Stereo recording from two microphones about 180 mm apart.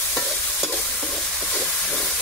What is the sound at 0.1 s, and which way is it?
Stir, centre (ahead or behind).